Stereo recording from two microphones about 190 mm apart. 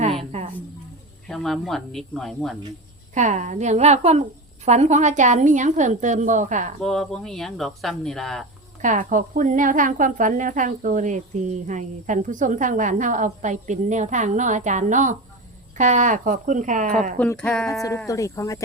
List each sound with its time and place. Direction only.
1.3 s speech: centre (ahead or behind)
3.2 s a woman's voice: 40° right (ahead or behind)
6.8 s speech: centre (ahead or behind)
8.8 s a woman's voice: 40° right (ahead or behind)
17.2 s speech: 5° left (ahead or behind)
17.8 s speech: 15° left (ahead or behind)